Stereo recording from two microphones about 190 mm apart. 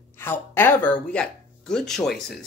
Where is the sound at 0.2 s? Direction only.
10° left (ahead or behind).